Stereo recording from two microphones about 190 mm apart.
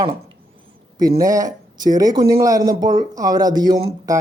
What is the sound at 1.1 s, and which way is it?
Speech, 15° right (ahead or behind).